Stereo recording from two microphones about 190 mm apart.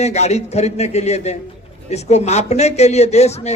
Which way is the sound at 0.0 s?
35° left (ahead or behind).